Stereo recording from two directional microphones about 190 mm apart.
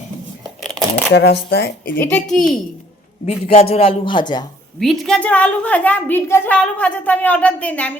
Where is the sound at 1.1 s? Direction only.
60° left (ahead or behind).